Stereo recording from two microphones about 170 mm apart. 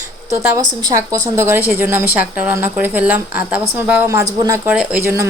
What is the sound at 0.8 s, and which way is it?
A woman's voice, 20° right (ahead or behind).